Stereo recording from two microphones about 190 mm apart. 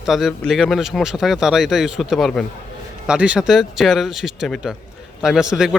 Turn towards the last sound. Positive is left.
turn(degrees=0)  # may be behind; listen again after turning